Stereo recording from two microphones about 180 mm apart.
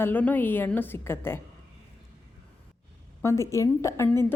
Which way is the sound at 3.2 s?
15° left (ahead or behind).